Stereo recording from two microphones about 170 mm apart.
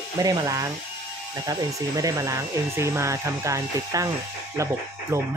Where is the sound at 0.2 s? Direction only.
20° right (ahead or behind).